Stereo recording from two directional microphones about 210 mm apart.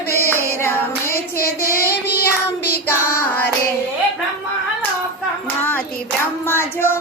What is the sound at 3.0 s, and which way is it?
Child singing, 90° left.